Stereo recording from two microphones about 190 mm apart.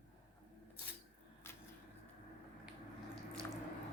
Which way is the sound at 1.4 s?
10° left (ahead or behind).